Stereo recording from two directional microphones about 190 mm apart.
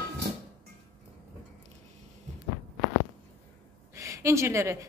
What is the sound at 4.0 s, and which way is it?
Speech, 15° right (ahead or behind).